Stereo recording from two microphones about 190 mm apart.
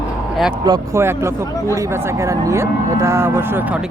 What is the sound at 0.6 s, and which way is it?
Speech, 15° right (ahead or behind).